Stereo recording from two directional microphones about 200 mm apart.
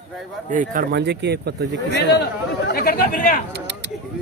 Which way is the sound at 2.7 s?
50° left (ahead or behind).